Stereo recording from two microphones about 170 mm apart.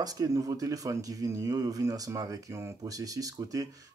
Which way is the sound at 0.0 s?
20° right (ahead or behind).